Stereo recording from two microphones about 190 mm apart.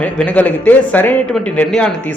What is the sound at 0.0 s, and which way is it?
Speech, 5° left (ahead or behind).